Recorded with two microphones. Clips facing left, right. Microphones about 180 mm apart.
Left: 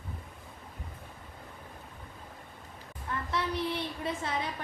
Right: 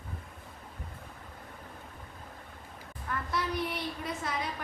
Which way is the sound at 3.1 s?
25° left (ahead or behind).